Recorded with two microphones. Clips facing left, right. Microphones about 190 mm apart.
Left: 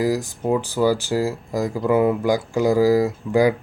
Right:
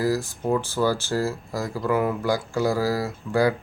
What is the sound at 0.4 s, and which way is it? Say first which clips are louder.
Speech: left 4 dB; 15° left (ahead or behind).